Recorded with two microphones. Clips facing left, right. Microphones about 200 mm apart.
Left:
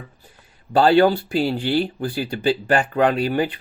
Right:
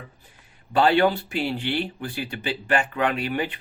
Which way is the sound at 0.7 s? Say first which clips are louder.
Left 4 dB; 35° left (ahead or behind).